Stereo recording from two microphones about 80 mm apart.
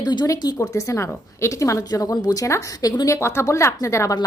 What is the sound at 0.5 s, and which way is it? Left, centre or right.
A woman's voice, left.